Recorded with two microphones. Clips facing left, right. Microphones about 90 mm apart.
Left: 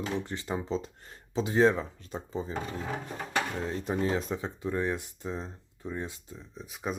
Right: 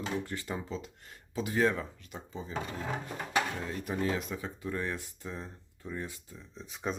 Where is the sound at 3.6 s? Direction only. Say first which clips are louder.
Left 3 dB; 30° left (ahead or behind).